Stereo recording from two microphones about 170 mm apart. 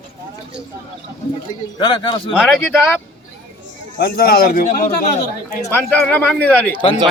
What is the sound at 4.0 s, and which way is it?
Speech, 65° left (ahead or behind).